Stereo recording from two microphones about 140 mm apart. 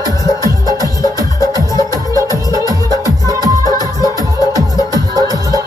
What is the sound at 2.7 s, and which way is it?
Music, 25° right (ahead or behind).